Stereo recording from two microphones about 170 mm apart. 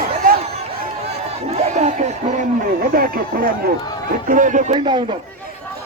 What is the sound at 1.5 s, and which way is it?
Crowd, 40° right (ahead or behind).